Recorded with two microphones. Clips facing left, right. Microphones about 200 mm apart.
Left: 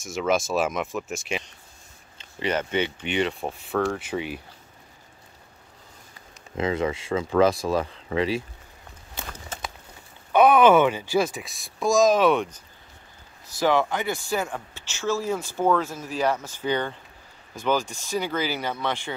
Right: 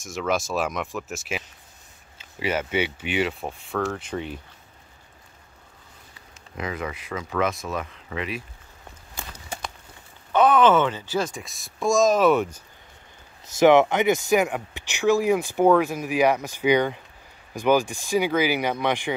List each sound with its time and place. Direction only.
0.0 s speech: centre (ahead or behind)
6.5 s speech: 25° left (ahead or behind)
9.5 s a sound: 10° right (ahead or behind)
10.3 s speech: 10° left (ahead or behind); by 12.6 s 5° right (ahead or behind)
13.6 s speech: 20° right (ahead or behind)